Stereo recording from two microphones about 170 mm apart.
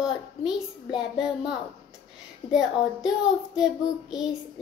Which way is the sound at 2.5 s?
Centre (ahead or behind).